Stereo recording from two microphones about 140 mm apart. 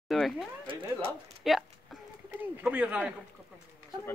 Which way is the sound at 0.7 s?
35° right (ahead or behind).